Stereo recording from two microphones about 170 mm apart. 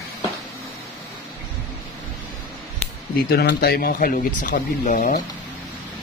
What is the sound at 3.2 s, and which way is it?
Speech, 70° left (ahead or behind).